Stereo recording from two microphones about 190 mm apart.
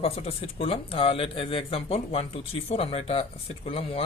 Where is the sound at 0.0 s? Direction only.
30° left (ahead or behind).